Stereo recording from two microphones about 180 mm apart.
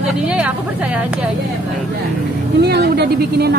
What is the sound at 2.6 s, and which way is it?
Speech, 65° right (ahead or behind).